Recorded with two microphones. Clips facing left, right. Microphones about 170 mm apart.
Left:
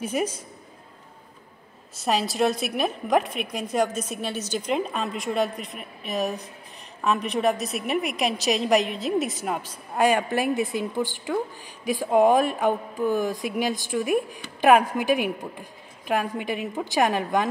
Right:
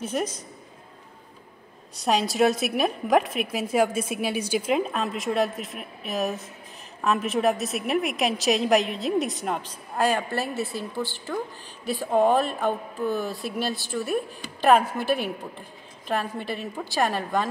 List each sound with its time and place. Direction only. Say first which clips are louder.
0.0 s speech: left 2 dB; 10° left (ahead or behind)
2.0 s a woman's voice: right 2 dB; centre (ahead or behind); by 17.5 s 15° left (ahead or behind)